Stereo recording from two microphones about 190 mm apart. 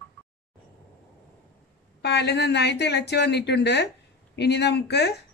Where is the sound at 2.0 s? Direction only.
60° left (ahead or behind).